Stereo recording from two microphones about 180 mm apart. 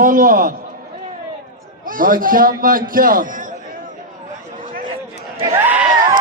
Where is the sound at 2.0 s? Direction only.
50° right (ahead or behind).